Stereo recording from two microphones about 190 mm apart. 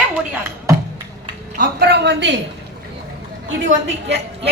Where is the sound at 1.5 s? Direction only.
60° right (ahead or behind).